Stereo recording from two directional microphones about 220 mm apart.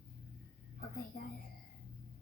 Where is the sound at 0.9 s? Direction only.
40° left (ahead or behind).